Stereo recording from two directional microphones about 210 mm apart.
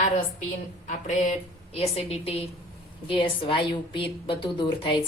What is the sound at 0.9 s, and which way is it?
A woman's voice, 35° left (ahead or behind).